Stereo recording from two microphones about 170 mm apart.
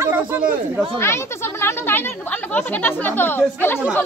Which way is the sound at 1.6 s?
10° left (ahead or behind).